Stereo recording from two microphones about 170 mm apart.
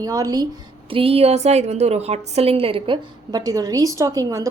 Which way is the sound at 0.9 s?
35° right (ahead or behind).